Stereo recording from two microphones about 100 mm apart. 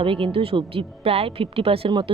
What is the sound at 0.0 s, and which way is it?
Speech, 60° right (ahead or behind).